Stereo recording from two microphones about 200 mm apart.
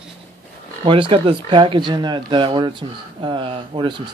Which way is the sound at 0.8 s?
25° right (ahead or behind).